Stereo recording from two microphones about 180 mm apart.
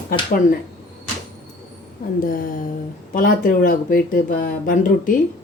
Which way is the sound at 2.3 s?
50° left (ahead or behind).